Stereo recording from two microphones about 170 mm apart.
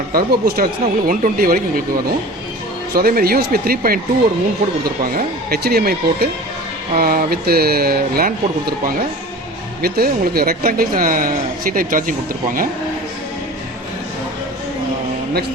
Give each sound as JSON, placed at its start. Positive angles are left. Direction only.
{"t": 0.1, "sound": "speech", "side_deg": -60}
{"t": 2.9, "sound": "speech", "side_deg": -60}
{"t": 5.1, "sound": "speech", "side_deg": -70}